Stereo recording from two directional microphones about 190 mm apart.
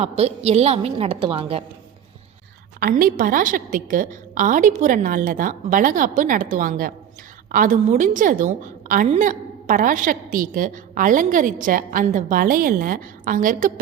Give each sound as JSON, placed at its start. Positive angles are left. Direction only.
{"t": 0.0, "sound": "a woman's voice", "side_deg": -35}
{"t": 2.8, "sound": "a woman's voice", "side_deg": -50}